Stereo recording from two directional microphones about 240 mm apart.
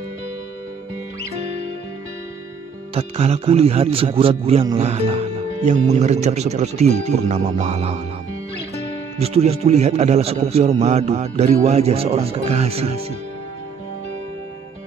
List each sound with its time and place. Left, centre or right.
2.9 s a man's voice: right
9.2 s a man's voice: right